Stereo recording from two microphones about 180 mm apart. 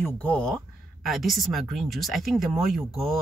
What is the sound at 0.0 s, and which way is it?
Speech, 5° left (ahead or behind).